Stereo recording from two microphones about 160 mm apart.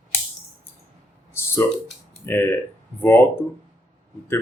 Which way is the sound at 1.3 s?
15° left (ahead or behind).